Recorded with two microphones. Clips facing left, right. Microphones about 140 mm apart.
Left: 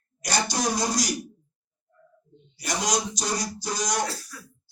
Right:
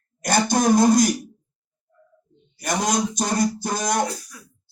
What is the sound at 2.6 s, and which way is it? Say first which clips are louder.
Speech: right 5 dB; 55° right (ahead or behind).